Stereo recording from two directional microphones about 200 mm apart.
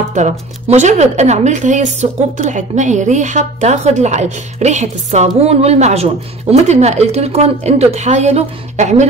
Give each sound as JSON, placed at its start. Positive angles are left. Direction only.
{"t": 0.1, "sound": "a woman's voice", "side_deg": -35}